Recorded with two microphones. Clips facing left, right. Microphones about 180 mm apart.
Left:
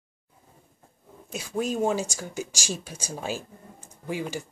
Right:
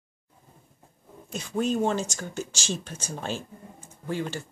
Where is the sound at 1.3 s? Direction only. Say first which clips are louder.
Right 2 dB; 5° left (ahead or behind).